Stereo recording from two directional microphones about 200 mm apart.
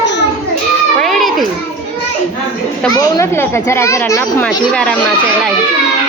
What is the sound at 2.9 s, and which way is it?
A woman's voice, 15° left (ahead or behind).